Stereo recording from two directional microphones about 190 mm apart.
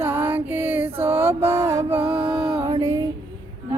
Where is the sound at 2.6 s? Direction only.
20° right (ahead or behind).